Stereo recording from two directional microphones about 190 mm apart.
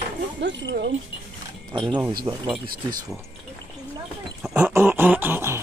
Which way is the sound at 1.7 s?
25° right (ahead or behind).